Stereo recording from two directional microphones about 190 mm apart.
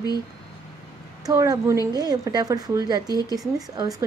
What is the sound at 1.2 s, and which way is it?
A woman's voice, 20° right (ahead or behind).